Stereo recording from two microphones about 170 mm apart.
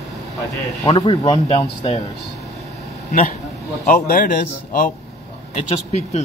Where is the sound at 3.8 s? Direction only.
60° left (ahead or behind).